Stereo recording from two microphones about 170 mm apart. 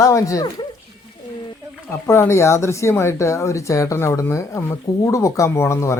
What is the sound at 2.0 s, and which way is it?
Speech, 15° left (ahead or behind).